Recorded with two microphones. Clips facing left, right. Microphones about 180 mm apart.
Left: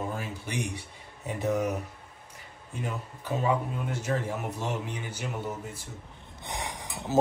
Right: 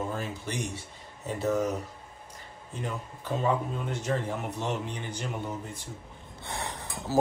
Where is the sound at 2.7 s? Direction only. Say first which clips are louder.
Even; 10° left (ahead or behind).